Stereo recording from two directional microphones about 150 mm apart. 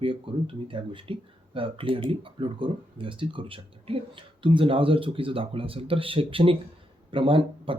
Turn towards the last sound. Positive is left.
turn(degrees=-35)  # may be behind; listen again after turning